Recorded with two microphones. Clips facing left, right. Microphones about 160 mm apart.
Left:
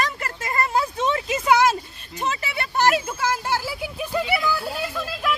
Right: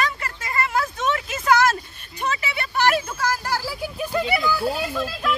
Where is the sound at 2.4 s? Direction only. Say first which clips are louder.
Left 1 dB; 40° left (ahead or behind).